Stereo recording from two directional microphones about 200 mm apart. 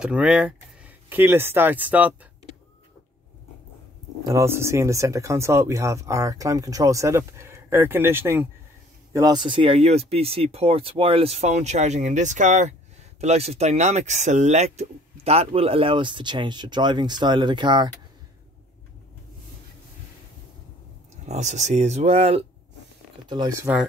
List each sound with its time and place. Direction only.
0.0 s speech: 5° right (ahead or behind)
4.2 s speech: 15° right (ahead or behind)
21.3 s speech: 35° right (ahead or behind)